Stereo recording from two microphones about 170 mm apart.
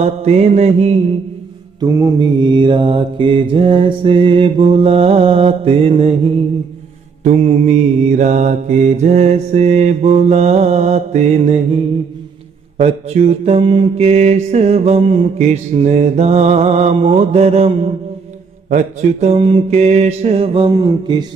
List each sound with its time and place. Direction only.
0.0 s mantra: 40° right (ahead or behind)
1.8 s mantra: 25° right (ahead or behind)
20.7 s a sound: 25° right (ahead or behind)